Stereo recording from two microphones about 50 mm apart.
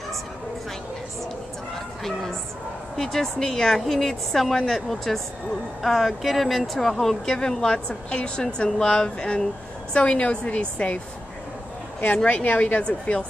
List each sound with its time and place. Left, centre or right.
3.0 s a woman's voice: centre; by 11.0 s left
12.3 s a woman's voice: left